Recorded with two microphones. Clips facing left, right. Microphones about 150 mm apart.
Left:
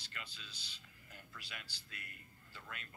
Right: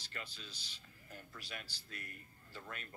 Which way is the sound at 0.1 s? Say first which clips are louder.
Right 4 dB; 40° right (ahead or behind).